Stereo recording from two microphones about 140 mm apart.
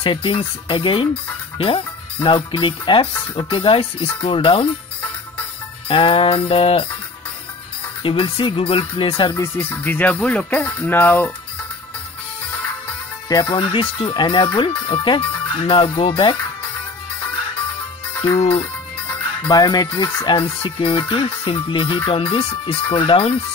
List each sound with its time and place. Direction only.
0.0 s speech: 40° left (ahead or behind)
2.2 s speech: 35° left (ahead or behind)
5.9 s speech: 40° left (ahead or behind)
8.0 s speech: 40° left (ahead or behind)
9.4 s speech: 15° left (ahead or behind)
13.3 s speech: 35° left (ahead or behind)
19.5 s speech: 30° left (ahead or behind)